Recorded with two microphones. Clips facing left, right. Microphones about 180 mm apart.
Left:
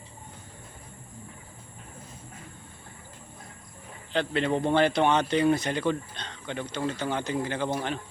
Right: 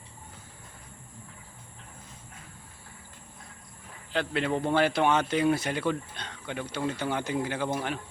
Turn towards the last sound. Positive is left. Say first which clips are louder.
# left 1 dB
turn(degrees=-10)  # may be behind; listen again after turning